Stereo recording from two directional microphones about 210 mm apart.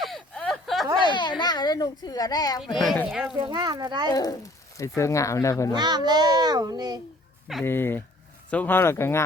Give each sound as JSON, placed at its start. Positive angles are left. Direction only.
{"t": 0.0, "sound": "a sound", "side_deg": 0}
{"t": 1.1, "sound": "a child's voice", "side_deg": 20}
{"t": 2.7, "sound": "speech", "side_deg": 0}
{"t": 3.3, "sound": "a child's voice", "side_deg": -20}
{"t": 4.1, "sound": "speech", "side_deg": 20}
{"t": 5.7, "sound": "a child's voice", "side_deg": -20}
{"t": 7.6, "sound": "speech", "side_deg": 10}